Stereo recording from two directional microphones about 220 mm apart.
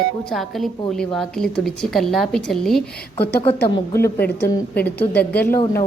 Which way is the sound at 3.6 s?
20° left (ahead or behind).